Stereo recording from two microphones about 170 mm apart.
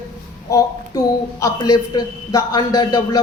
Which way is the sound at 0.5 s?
20° left (ahead or behind).